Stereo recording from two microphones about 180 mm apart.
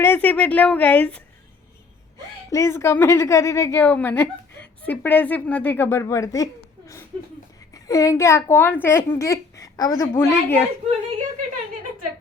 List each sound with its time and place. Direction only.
0.0 s a woman's voice: 10° left (ahead or behind)
2.5 s a woman's voice: 15° left (ahead or behind)